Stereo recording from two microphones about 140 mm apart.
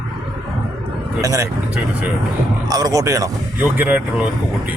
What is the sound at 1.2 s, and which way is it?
Speech, 20° right (ahead or behind).